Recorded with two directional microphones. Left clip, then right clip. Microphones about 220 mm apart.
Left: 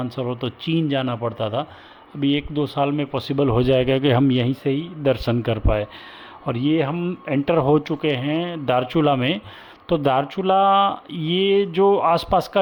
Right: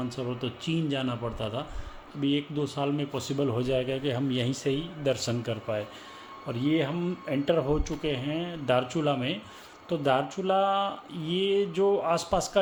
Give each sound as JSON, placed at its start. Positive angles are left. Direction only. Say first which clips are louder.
{"t": 0.2, "sound": "a man's voice", "louder": "left 7 dB", "side_deg": 45}